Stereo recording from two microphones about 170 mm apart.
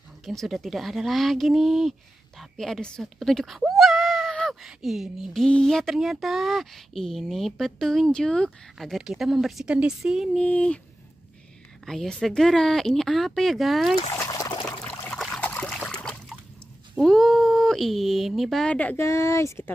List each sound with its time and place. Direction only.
0.2 s speech: centre (ahead or behind)
10.4 s speech: 5° left (ahead or behind)
11.8 s speech: centre (ahead or behind)
14.1 s trickle: 20° left (ahead or behind)
14.9 s trickle: 5° left (ahead or behind)
16.9 s speech: centre (ahead or behind); by 19.7 s 15° left (ahead or behind)